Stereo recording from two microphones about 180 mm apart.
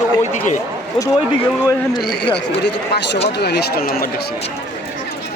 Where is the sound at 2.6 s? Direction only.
70° left (ahead or behind); by 4.1 s 55° left (ahead or behind).